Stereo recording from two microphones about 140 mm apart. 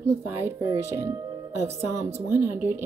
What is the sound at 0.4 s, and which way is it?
A woman's voice, 15° right (ahead or behind).